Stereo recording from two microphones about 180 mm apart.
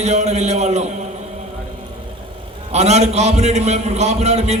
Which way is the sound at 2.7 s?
35° right (ahead or behind).